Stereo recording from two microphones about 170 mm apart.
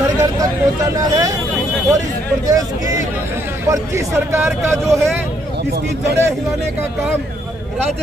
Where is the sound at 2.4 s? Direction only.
20° right (ahead or behind).